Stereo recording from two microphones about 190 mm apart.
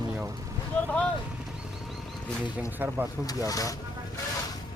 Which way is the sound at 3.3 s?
20° left (ahead or behind).